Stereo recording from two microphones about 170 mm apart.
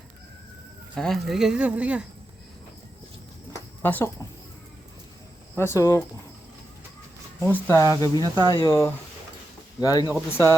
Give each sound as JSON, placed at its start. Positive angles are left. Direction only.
{"t": 0.9, "sound": "speech", "side_deg": 0}
{"t": 3.8, "sound": "speech", "side_deg": 15}
{"t": 5.5, "sound": "speech", "side_deg": 15}
{"t": 7.4, "sound": "speech", "side_deg": 15}